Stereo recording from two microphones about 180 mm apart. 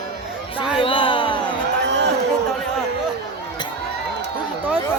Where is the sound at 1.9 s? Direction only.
75° right (ahead or behind).